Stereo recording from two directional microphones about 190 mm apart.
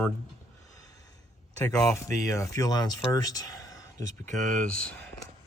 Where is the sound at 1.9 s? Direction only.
15° left (ahead or behind).